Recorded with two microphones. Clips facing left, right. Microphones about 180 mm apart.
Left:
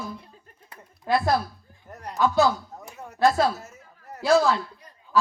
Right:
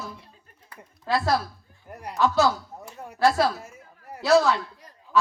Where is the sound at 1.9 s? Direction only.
10° right (ahead or behind).